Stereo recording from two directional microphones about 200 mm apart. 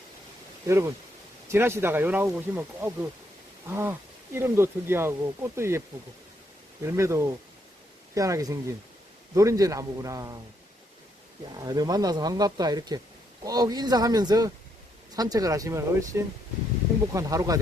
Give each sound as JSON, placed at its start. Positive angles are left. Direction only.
{"t": 0.7, "sound": "speech", "side_deg": -10}
{"t": 6.8, "sound": "speech", "side_deg": -15}
{"t": 11.5, "sound": "speech", "side_deg": -20}